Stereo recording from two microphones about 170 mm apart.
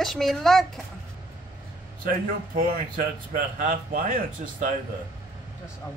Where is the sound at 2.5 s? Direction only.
55° right (ahead or behind).